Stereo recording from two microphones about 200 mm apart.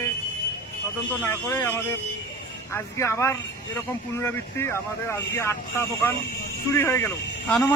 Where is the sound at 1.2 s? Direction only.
15° left (ahead or behind).